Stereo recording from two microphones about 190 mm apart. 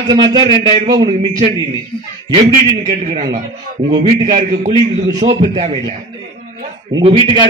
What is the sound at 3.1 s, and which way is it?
Speech, 20° right (ahead or behind).